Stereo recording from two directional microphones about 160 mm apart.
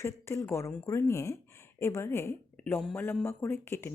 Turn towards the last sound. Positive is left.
turn(degrees=15)  # may be behind; listen again after turning